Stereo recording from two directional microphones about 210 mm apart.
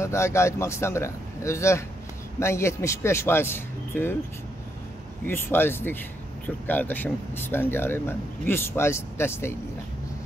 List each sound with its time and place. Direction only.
0.0 s speech: 15° left (ahead or behind)
5.2 s speech: 10° left (ahead or behind)